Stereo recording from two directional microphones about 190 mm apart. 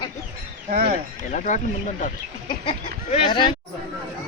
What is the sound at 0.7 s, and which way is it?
Speech, 55° right (ahead or behind).